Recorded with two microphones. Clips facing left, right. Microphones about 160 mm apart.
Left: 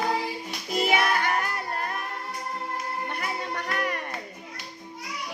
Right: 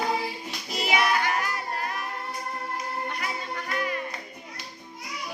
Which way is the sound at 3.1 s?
60° left (ahead or behind).